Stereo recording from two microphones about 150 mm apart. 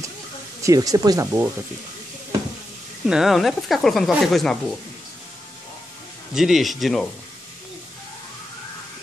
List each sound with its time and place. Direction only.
0.6 s speech: 20° right (ahead or behind)
3.1 s speech: centre (ahead or behind)
6.3 s speech: centre (ahead or behind)